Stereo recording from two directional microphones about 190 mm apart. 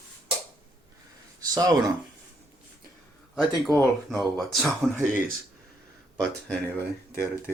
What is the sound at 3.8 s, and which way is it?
Speech, centre (ahead or behind).